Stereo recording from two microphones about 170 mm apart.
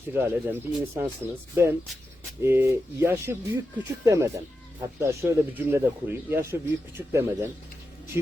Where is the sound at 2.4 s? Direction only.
15° right (ahead or behind).